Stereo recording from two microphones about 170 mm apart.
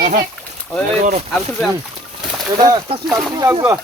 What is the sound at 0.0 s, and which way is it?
Speech, 55° right (ahead or behind).